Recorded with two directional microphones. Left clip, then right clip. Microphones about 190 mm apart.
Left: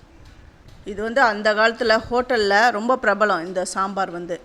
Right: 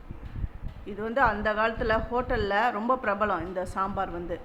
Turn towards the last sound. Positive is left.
turn(degrees=25)  # may be behind; listen again after turning